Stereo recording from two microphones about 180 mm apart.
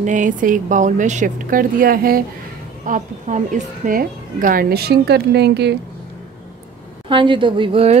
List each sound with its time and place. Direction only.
0.0 s a woman's voice: 45° right (ahead or behind); by 5.8 s 70° right (ahead or behind)
7.1 s a woman's voice: 30° right (ahead or behind)